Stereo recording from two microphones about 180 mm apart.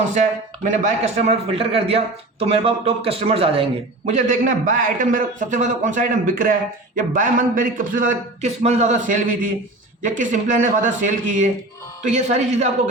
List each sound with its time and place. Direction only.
0.1 s a man's voice: 40° right (ahead or behind)